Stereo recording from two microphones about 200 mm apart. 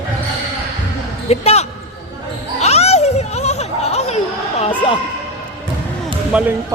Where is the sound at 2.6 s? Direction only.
35° left (ahead or behind).